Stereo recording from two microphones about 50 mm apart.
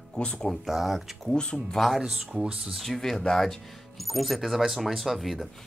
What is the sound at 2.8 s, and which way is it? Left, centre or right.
Speech, centre.